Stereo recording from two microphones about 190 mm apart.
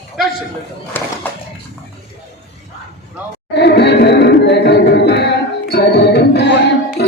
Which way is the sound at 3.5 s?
60° left (ahead or behind).